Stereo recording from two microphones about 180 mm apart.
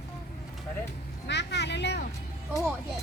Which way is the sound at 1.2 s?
75° left (ahead or behind).